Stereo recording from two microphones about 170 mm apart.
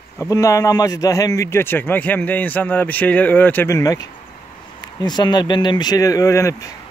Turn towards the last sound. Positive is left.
turn(degrees=20)  # may be behind; listen again after turning